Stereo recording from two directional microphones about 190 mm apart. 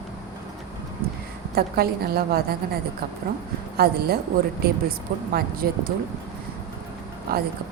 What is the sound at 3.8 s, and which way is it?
Speech, 55° right (ahead or behind).